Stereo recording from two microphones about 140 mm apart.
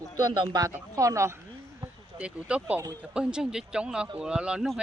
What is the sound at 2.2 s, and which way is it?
A man's voice, 10° right (ahead or behind).